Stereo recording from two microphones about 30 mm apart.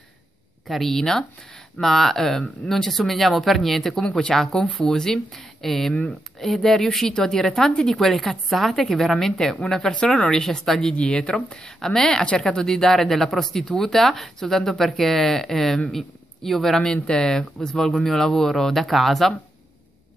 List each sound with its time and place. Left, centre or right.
0.7 s speech: centre
0.9 s speech: centre
5.3 s speech: centre
9.7 s speech: left
10.4 s speech: centre
10.8 s speech: left
11.8 s speech: centre
16.8 s speech: left; by 19.3 s centre